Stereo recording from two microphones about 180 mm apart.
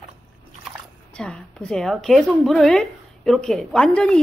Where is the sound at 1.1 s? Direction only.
5° left (ahead or behind).